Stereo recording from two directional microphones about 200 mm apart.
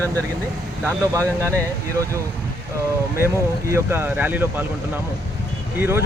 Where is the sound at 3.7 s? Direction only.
10° right (ahead or behind).